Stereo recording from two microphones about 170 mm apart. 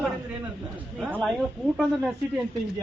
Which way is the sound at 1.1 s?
Centre (ahead or behind).